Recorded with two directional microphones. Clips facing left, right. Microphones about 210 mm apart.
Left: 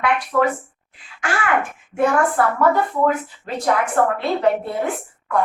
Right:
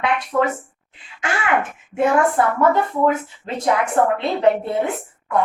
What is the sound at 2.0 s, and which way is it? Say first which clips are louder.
A woman's voice: right 1 dB; 20° right (ahead or behind).